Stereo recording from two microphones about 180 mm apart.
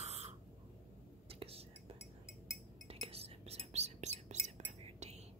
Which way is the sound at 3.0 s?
35° right (ahead or behind).